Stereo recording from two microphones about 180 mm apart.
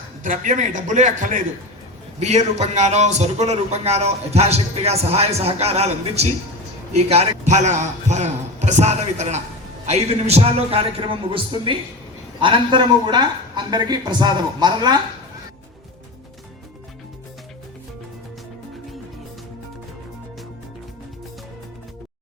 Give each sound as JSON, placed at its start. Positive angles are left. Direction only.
{"t": 0.2, "sound": "a man's voice", "side_deg": -45}